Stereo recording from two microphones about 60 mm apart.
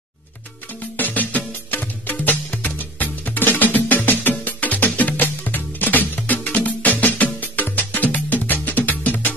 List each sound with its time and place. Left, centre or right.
0.9 s music: left